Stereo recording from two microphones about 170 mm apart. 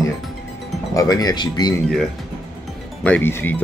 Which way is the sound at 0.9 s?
20° left (ahead or behind).